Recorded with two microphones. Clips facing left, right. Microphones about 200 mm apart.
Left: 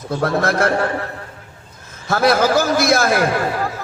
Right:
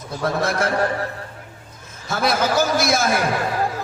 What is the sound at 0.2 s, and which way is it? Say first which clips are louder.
Speech: left 3 dB; 55° left (ahead or behind).